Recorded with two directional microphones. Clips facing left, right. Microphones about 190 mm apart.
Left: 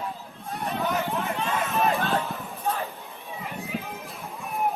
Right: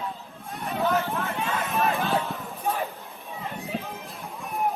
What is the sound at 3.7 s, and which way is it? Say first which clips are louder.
Music: even; 30° right (ahead or behind).